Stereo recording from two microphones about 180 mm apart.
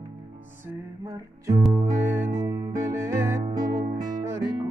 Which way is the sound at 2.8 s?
15° right (ahead or behind).